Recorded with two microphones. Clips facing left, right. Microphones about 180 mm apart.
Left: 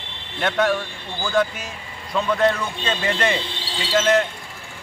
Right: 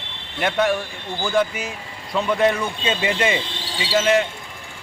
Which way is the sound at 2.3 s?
10° right (ahead or behind).